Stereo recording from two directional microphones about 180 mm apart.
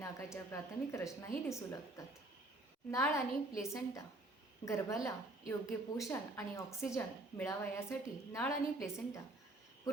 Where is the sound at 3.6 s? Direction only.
15° left (ahead or behind).